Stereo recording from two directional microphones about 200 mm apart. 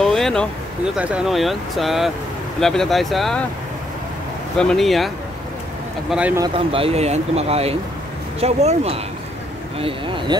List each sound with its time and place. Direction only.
0.0 s a sound: centre (ahead or behind)
0.9 s speech: 5° right (ahead or behind)
4.6 s speech: centre (ahead or behind)
6.4 s speech: 25° right (ahead or behind)